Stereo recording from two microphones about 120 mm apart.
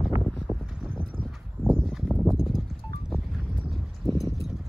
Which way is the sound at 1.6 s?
5° left (ahead or behind).